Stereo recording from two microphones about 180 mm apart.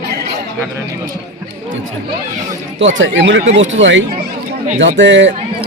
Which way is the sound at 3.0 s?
90° right.